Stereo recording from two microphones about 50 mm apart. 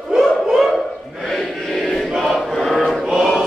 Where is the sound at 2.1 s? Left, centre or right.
Centre.